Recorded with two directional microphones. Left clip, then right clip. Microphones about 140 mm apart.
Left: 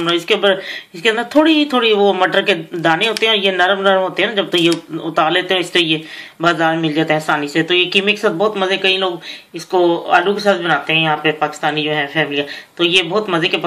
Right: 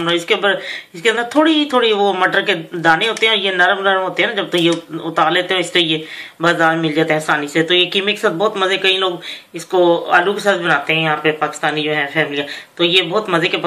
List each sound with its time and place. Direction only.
0.1 s speech: 45° left (ahead or behind)